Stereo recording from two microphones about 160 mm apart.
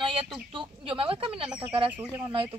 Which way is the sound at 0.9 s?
35° right (ahead or behind).